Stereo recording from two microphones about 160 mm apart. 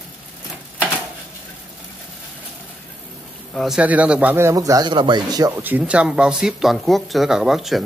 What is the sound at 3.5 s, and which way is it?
A man's voice, 5° right (ahead or behind).